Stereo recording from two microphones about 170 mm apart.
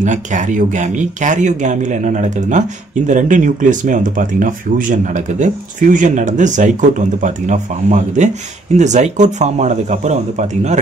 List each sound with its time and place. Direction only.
0.0 s speech: 45° right (ahead or behind)